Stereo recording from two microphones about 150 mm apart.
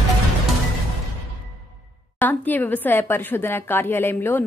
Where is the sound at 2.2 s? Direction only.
10° left (ahead or behind).